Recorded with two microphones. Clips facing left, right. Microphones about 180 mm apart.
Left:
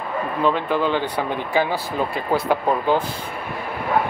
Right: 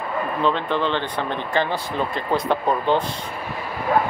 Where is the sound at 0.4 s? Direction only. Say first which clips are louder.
Left 2 dB; 10° left (ahead or behind).